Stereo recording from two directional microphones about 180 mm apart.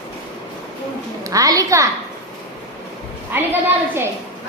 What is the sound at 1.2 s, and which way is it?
Speech, 20° right (ahead or behind).